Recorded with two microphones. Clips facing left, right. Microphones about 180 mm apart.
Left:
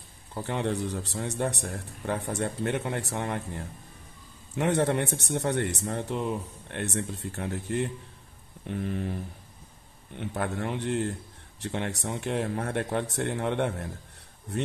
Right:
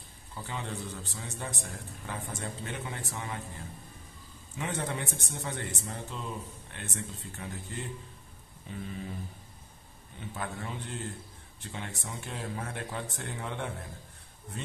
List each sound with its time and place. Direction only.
0.3 s a man's voice: 60° left (ahead or behind)